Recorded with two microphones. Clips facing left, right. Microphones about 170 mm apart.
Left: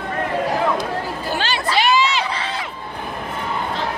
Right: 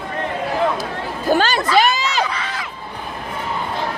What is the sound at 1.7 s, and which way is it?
Crowd, 45° right (ahead or behind).